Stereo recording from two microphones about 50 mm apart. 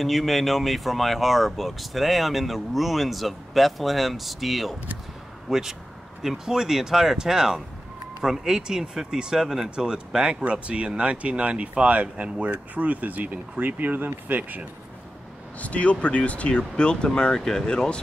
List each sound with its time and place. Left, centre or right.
0.0 s speech: centre; by 14.6 s right
15.6 s speech: left